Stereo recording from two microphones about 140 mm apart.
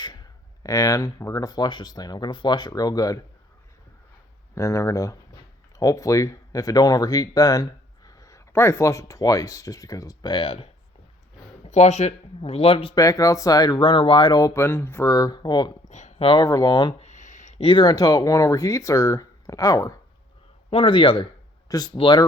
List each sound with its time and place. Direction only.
0.0 s speech: 30° left (ahead or behind)
4.5 s speech: 20° left (ahead or behind); by 10.7 s 40° left (ahead or behind)
11.6 s speech: 50° left (ahead or behind)
13.0 s speech: 25° left (ahead or behind)
15.9 s a sound: 55° left (ahead or behind)
16.2 s speech: 30° left (ahead or behind)
17.0 s speech: 55° left (ahead or behind); by 20.0 s 25° left (ahead or behind)
20.7 s speech: 40° left (ahead or behind)
21.7 s speech: 25° left (ahead or behind)